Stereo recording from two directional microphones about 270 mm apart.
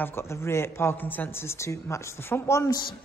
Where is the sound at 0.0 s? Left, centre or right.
Centre.